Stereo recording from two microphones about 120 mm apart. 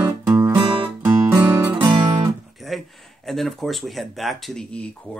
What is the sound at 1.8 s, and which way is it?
Music, 40° right (ahead or behind).